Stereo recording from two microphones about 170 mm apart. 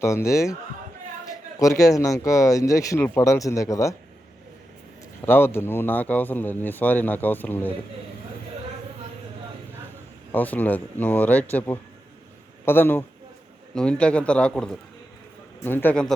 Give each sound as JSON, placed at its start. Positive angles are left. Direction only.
{"t": 0.0, "sound": "speech", "side_deg": 15}
{"t": 5.2, "sound": "speech", "side_deg": 15}
{"t": 10.3, "sound": "speech", "side_deg": 10}